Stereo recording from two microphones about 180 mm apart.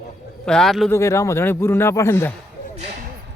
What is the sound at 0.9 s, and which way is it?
Speech, 15° left (ahead or behind).